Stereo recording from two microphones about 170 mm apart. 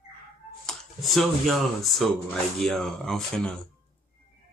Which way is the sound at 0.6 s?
Centre (ahead or behind).